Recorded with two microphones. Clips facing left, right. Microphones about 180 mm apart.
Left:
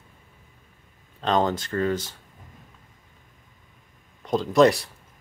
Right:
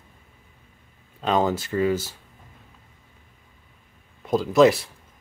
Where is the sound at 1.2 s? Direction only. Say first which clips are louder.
Right 1 dB; 5° right (ahead or behind).